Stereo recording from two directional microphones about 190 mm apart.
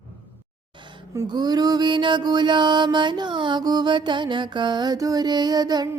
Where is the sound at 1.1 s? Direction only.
20° right (ahead or behind).